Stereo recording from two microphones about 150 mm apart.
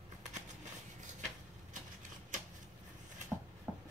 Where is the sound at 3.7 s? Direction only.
10° right (ahead or behind).